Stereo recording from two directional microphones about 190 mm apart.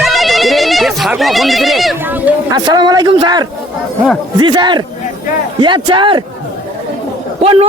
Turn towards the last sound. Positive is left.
turn(degrees=-30)  # may be behind; listen again after turning